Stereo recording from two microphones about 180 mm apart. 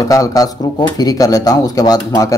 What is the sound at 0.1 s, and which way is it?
Speech, 20° left (ahead or behind).